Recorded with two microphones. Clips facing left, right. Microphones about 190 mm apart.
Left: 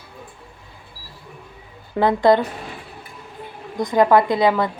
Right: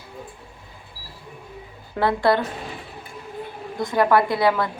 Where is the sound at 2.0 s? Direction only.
20° left (ahead or behind).